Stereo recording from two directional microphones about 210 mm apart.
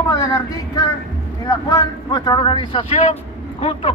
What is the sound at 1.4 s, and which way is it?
Speech, 15° left (ahead or behind).